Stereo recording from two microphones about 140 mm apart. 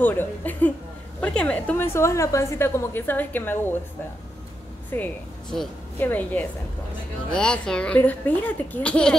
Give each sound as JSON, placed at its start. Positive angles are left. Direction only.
{"t": 0.0, "sound": "a woman's voice", "side_deg": 15}
{"t": 4.9, "sound": "a woman's voice", "side_deg": 10}